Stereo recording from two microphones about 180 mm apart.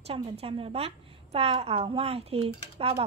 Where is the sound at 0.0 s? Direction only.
35° right (ahead or behind).